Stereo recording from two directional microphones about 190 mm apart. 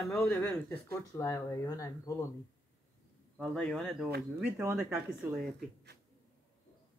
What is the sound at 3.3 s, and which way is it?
Speech, centre (ahead or behind).